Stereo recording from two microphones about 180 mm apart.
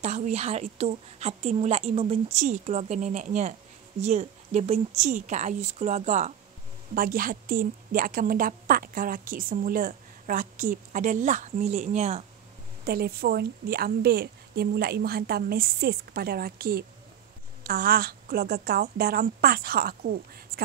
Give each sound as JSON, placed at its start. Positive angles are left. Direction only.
{"t": 0.0, "sound": "a woman's voice", "side_deg": -40}
{"t": 7.0, "sound": "a woman's voice", "side_deg": -50}
{"t": 12.8, "sound": "a woman's voice", "side_deg": -60}